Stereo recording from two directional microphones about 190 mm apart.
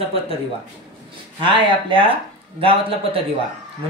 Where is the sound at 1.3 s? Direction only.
25° right (ahead or behind).